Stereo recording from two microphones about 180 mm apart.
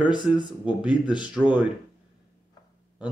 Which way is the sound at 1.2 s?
5° right (ahead or behind).